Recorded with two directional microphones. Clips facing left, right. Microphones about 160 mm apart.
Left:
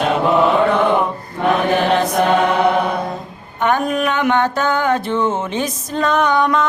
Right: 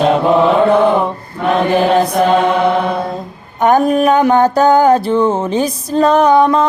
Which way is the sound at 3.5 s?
40° right (ahead or behind).